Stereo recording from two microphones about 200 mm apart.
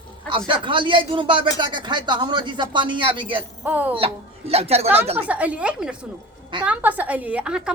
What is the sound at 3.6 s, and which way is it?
Speech, 10° right (ahead or behind).